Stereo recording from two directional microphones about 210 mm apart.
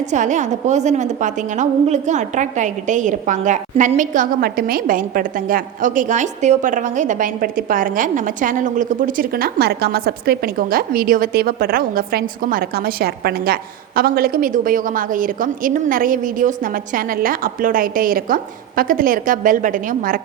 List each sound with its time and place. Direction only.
0.0 s a woman's voice: 35° right (ahead or behind)